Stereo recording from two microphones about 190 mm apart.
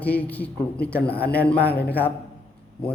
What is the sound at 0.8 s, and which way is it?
Speech, 55° left (ahead or behind).